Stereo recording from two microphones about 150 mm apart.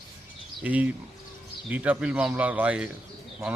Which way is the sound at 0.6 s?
10° right (ahead or behind).